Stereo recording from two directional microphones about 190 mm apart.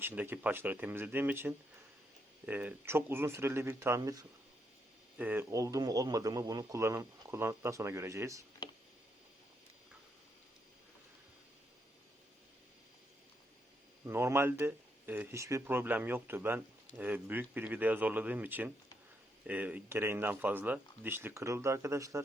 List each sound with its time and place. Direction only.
0.0 s speech: 10° right (ahead or behind)
14.0 s speech: 15° right (ahead or behind)